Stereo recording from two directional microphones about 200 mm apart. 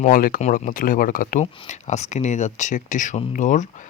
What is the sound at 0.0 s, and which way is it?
Speech, 45° left (ahead or behind).